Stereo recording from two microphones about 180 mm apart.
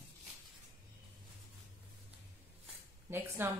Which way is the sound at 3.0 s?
15° right (ahead or behind).